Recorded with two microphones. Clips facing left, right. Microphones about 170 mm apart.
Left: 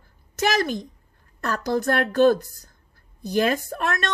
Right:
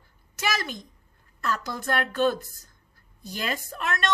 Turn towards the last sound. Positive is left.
turn(degrees=50)  # may be behind; listen again after turning